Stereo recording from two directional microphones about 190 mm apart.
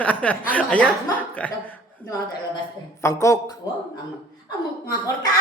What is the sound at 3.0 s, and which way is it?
Speech, 15° left (ahead or behind).